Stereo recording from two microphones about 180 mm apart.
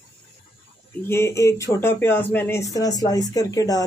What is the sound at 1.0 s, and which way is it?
Speech, 15° left (ahead or behind).